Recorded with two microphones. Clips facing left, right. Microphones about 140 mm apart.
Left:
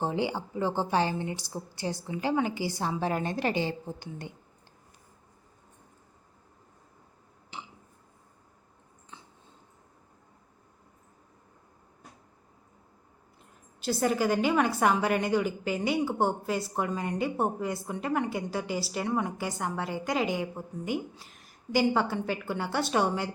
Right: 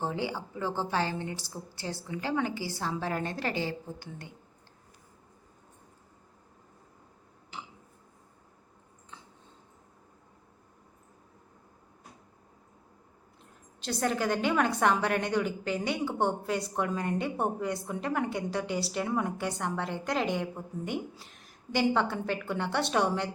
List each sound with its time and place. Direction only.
0.0 s a woman's voice: 20° left (ahead or behind)
7.5 s a sound: centre (ahead or behind)
13.8 s a woman's voice: 5° left (ahead or behind)